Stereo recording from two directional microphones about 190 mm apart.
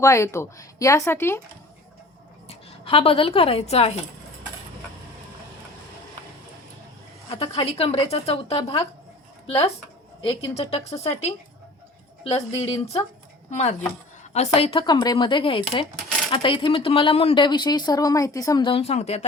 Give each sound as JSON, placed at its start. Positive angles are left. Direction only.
{"t": 0.0, "sound": "speech", "side_deg": 15}
{"t": 2.5, "sound": "a woman's voice", "side_deg": 30}
{"t": 7.3, "sound": "a woman's voice", "side_deg": 30}